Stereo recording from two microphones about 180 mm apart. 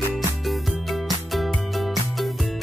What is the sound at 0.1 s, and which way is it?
Music, centre (ahead or behind).